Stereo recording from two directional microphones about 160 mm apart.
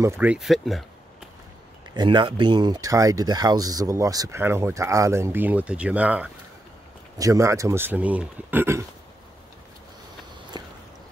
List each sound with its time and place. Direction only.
0.0 s speech: 15° right (ahead or behind)
2.0 s speech: 30° right (ahead or behind); by 6.3 s 10° right (ahead or behind)
7.2 s speech: 20° right (ahead or behind)
10.5 s a sound: 25° right (ahead or behind)